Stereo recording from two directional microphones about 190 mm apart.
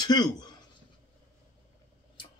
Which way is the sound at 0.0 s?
20° left (ahead or behind).